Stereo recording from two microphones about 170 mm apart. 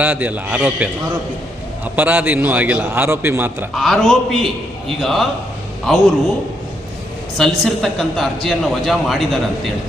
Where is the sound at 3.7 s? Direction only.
Centre (ahead or behind).